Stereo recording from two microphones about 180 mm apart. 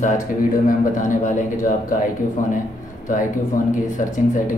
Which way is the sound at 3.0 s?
45° left (ahead or behind).